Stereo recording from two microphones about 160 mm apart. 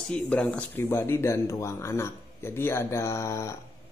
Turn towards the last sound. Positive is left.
turn(degrees=20)  # may be behind; listen again after turning